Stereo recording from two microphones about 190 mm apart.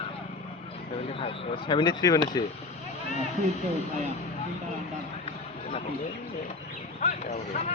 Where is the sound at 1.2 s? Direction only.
25° left (ahead or behind).